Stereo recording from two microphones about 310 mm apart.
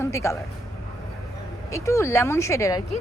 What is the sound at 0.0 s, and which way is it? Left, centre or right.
Speech, centre.